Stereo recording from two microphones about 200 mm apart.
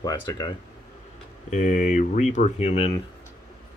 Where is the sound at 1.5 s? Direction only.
35° left (ahead or behind).